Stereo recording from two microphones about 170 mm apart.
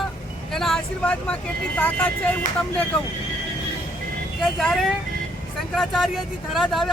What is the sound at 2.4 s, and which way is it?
Speech, 50° left (ahead or behind).